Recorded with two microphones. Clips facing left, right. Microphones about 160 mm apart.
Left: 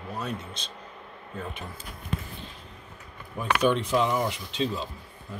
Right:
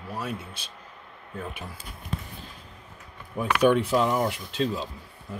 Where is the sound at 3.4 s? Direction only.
10° right (ahead or behind).